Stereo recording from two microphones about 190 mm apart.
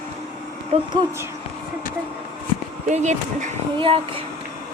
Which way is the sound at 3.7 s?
30° right (ahead or behind).